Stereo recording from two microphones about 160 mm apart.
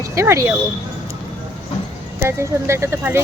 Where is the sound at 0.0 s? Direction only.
20° right (ahead or behind).